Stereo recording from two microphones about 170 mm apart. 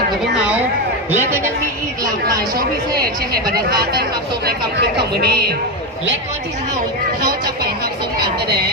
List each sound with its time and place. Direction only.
0.3 s speech: 5° right (ahead or behind)
2.6 s speech: 65° right (ahead or behind)
7.2 s speech: 60° right (ahead or behind)